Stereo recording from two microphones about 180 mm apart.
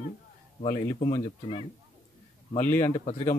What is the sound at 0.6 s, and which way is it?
Speech, 45° left (ahead or behind).